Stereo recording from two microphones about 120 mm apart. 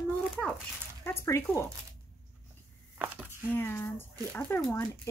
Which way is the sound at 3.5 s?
15° left (ahead or behind).